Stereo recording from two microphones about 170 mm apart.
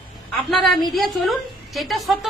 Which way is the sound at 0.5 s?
Centre (ahead or behind).